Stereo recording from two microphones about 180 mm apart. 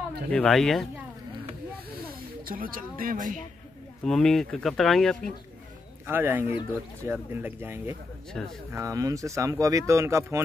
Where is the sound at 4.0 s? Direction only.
5° left (ahead or behind).